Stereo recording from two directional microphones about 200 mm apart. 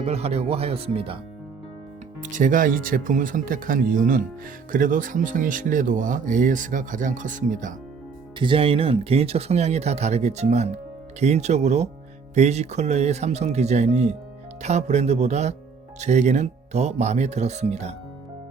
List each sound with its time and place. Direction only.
0.0 s speech: 30° right (ahead or behind)
2.2 s speech: 40° right (ahead or behind)
8.4 s speech: 25° right (ahead or behind)